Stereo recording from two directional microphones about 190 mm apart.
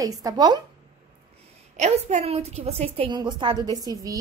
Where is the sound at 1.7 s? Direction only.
35° right (ahead or behind); by 4.1 s 20° right (ahead or behind).